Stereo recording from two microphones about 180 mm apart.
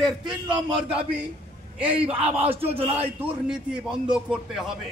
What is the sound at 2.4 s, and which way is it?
Speech, 35° right (ahead or behind).